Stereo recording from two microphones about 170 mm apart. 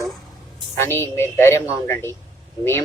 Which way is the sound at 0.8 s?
15° left (ahead or behind).